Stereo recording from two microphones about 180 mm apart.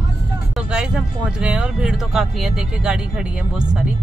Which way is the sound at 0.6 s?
5° right (ahead or behind).